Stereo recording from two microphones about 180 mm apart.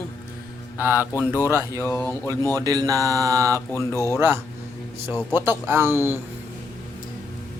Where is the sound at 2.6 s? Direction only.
20° right (ahead or behind).